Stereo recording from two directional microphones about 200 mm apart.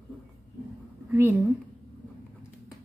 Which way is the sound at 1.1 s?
10° right (ahead or behind).